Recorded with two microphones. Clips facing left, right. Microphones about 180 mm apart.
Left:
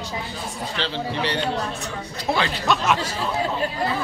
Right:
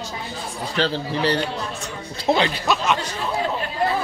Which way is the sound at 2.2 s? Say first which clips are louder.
Right 4 dB; 20° right (ahead or behind).